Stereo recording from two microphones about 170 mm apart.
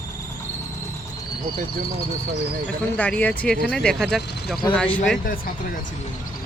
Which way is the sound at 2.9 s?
10° left (ahead or behind).